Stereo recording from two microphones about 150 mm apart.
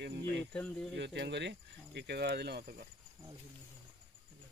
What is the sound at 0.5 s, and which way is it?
Speech, 5° left (ahead or behind).